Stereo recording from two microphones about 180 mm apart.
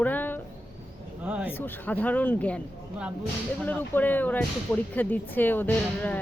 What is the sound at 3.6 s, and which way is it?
Speech, 10° left (ahead or behind).